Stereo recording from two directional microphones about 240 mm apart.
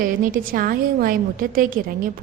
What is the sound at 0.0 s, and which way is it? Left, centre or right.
A woman's voice, right.